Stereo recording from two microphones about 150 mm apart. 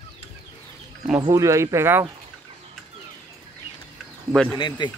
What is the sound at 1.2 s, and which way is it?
Speech, 20° right (ahead or behind).